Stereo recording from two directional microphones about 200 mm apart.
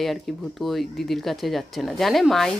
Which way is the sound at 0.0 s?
Centre (ahead or behind).